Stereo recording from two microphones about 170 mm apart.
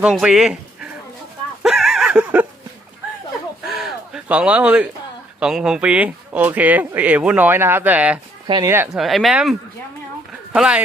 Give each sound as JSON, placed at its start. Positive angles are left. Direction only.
{"t": 0.0, "sound": "speech", "side_deg": -5}
{"t": 1.6, "sound": "a sound", "side_deg": 0}
{"t": 3.7, "sound": "a sound", "side_deg": 0}
{"t": 5.4, "sound": "speech", "side_deg": -5}
{"t": 8.4, "sound": "speech", "side_deg": -25}
{"t": 8.7, "sound": "speech", "side_deg": -10}
{"t": 9.0, "sound": "speech", "side_deg": 0}